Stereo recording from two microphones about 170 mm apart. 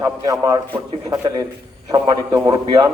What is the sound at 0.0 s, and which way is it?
A man's voice, 20° right (ahead or behind).